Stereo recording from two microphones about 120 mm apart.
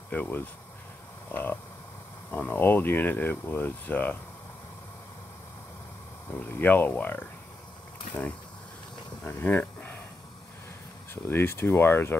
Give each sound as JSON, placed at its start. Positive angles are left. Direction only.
{"t": 0.1, "sound": "speech", "side_deg": 15}
{"t": 6.5, "sound": "speech", "side_deg": 15}
{"t": 9.2, "sound": "speech", "side_deg": 15}
{"t": 11.2, "sound": "speech", "side_deg": 20}